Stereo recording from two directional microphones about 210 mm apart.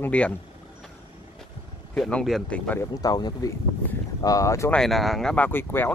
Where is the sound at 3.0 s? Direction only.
20° left (ahead or behind).